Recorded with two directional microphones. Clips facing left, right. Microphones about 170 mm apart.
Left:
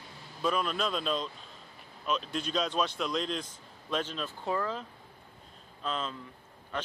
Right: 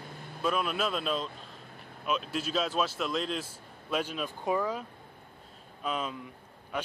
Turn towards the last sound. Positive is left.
turn(degrees=-10)  # may be behind; listen again after turning